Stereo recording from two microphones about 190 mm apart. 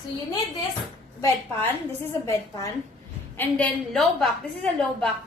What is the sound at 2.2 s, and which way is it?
A woman's voice, 15° left (ahead or behind).